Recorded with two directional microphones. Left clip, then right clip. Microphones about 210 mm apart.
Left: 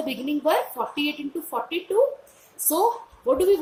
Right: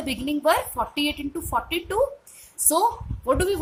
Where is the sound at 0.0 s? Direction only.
50° right (ahead or behind).